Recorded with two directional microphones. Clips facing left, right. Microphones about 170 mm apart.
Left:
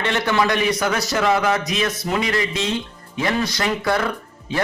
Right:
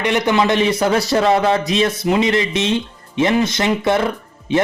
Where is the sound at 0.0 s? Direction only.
15° right (ahead or behind).